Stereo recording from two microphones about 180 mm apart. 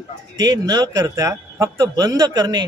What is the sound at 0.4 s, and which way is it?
Speech, 20° right (ahead or behind).